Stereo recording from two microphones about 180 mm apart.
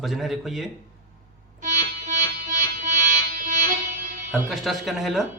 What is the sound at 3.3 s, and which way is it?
Music, 45° right (ahead or behind).